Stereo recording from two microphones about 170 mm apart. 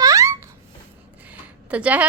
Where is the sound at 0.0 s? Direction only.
20° right (ahead or behind).